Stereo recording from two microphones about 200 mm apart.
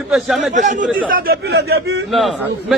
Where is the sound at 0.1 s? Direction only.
Centre (ahead or behind).